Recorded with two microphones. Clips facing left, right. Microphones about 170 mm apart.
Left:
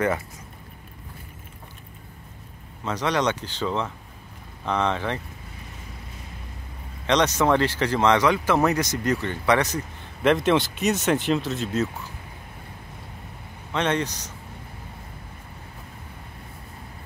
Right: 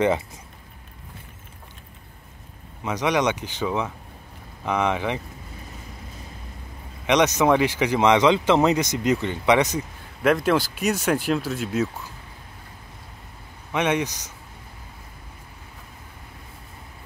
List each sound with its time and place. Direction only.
2.8 s speech: 15° right (ahead or behind)
7.1 s speech: 15° right (ahead or behind)
10.2 s speech: centre (ahead or behind)
13.7 s speech: 10° right (ahead or behind)